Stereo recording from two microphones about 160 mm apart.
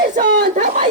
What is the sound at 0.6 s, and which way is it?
Speech, 50° right (ahead or behind).